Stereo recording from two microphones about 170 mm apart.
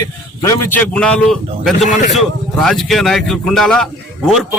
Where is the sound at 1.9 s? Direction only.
50° left (ahead or behind).